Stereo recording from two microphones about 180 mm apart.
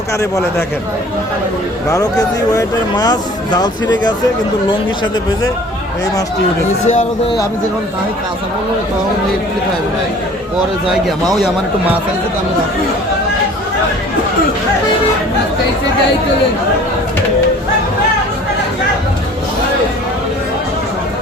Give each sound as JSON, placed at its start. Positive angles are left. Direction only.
{"t": 1.9, "sound": "speech", "side_deg": 20}
{"t": 6.8, "sound": "a man's voice", "side_deg": 40}
{"t": 11.3, "sound": "a man's voice", "side_deg": -5}